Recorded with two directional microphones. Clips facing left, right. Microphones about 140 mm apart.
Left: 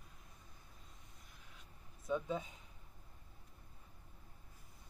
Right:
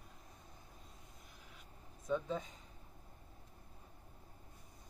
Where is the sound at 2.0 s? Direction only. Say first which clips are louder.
Right 1 dB; 10° left (ahead or behind).